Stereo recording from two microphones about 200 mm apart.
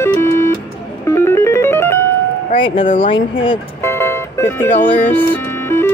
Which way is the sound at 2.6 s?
25° left (ahead or behind).